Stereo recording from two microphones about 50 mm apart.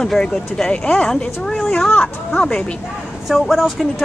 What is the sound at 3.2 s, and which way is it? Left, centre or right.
Speech, centre.